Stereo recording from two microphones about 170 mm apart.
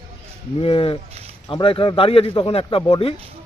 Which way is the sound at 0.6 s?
35° left (ahead or behind).